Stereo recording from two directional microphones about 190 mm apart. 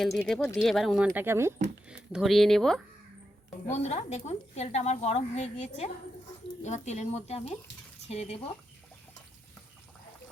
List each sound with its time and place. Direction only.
0.2 s speech: 5° left (ahead or behind); by 1.5 s 15° right (ahead or behind)
2.1 s speech: centre (ahead or behind)
3.7 s a woman's voice: 35° left (ahead or behind)